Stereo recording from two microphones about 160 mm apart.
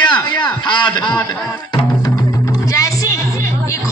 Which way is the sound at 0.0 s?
30° left (ahead or behind).